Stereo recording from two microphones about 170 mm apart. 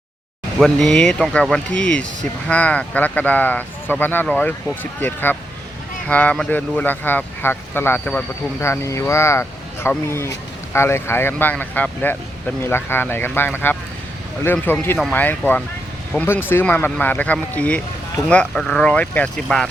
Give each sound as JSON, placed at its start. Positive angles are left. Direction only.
{"t": 0.6, "sound": "speech", "side_deg": 5}